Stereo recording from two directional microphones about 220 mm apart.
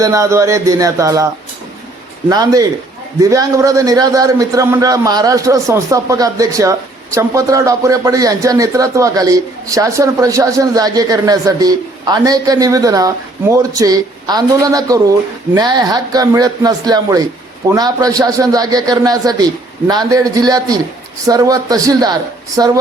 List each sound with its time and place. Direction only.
0.0 s a man's voice: 15° right (ahead or behind)
2.3 s a man's voice: 15° right (ahead or behind)